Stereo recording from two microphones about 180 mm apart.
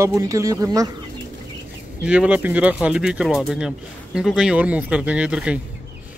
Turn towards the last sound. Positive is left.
turn(degrees=-5)  # may be behind; listen again after turning